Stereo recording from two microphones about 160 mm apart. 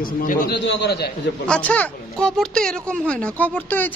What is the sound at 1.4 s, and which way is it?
Speech, 10° left (ahead or behind).